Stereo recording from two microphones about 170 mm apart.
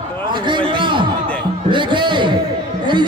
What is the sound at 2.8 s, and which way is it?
Chatter, 25° right (ahead or behind).